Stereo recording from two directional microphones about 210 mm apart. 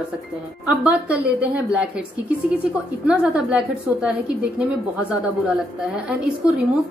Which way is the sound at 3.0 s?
5° right (ahead or behind).